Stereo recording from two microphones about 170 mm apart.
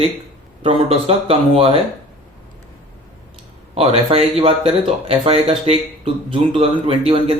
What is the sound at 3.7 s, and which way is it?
Speech, 35° right (ahead or behind).